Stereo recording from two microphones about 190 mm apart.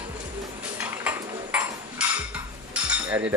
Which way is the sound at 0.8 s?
10° right (ahead or behind).